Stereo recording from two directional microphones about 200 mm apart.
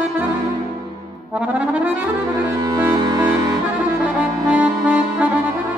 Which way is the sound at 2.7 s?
20° right (ahead or behind).